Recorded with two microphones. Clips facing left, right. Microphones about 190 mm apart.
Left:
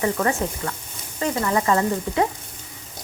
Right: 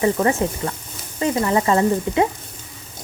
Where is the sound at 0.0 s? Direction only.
20° right (ahead or behind).